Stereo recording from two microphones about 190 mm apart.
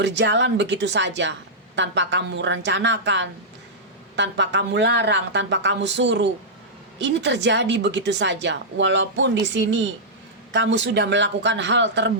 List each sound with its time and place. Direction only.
0.0 s a woman's voice: 65° right (ahead or behind)